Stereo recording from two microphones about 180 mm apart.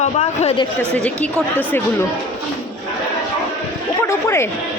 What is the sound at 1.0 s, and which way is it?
A woman's voice, 10° left (ahead or behind).